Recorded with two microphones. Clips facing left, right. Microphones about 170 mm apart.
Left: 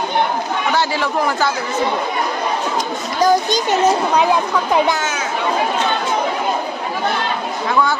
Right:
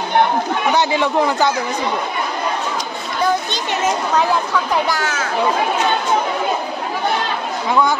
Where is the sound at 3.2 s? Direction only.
40° left (ahead or behind).